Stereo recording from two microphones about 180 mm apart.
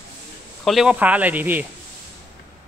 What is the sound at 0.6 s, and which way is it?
Speech, centre (ahead or behind).